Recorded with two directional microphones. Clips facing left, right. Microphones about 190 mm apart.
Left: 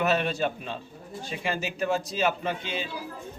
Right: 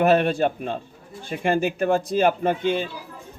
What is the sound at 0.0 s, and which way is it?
A man's voice, 55° right (ahead or behind).